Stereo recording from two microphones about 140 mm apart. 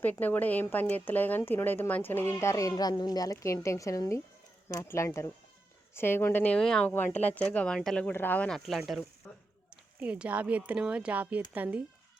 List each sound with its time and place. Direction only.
0.0 s a woman's voice: 10° left (ahead or behind)
9.2 s a sound: 10° left (ahead or behind)
10.0 s speech: 10° right (ahead or behind)